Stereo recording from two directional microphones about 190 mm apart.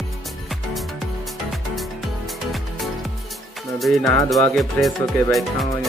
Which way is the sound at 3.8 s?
Centre (ahead or behind).